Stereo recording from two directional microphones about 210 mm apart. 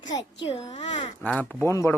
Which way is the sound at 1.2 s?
5° left (ahead or behind).